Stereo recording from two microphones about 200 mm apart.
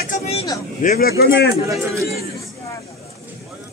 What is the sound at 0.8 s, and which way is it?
Speech, 50° left (ahead or behind).